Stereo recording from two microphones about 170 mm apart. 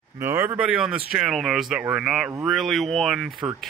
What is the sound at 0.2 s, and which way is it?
Speech, 15° right (ahead or behind).